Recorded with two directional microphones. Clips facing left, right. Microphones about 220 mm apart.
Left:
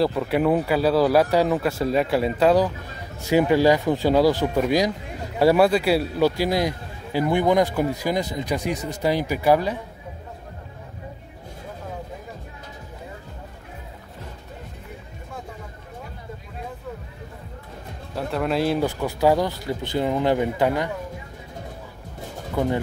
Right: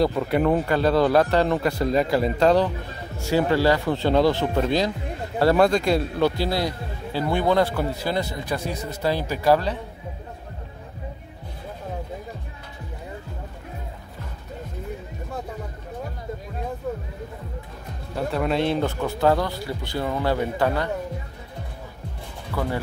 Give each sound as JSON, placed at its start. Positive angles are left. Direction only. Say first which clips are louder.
{"t": 0.0, "sound": "a man's voice", "louder": "even", "side_deg": 0}
{"t": 18.1, "sound": "a man's voice", "louder": "even", "side_deg": 0}